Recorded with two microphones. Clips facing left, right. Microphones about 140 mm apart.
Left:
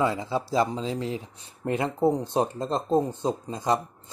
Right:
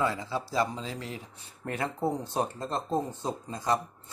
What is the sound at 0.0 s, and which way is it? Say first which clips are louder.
Speech: left 4 dB; 25° left (ahead or behind).